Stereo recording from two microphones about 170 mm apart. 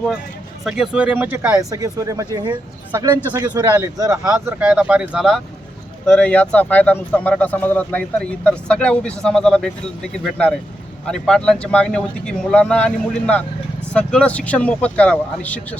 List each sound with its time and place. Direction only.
0.6 s speech: 5° right (ahead or behind)
4.6 s speech: 5° right (ahead or behind)